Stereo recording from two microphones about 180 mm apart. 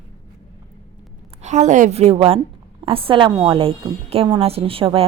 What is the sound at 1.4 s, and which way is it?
A woman's voice, 40° right (ahead or behind).